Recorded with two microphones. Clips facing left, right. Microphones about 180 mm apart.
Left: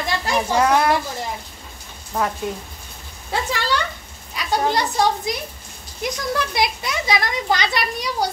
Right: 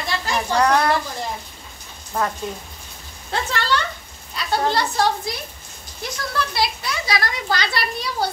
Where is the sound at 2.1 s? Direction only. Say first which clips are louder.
Left 1 dB; 5° right (ahead or behind).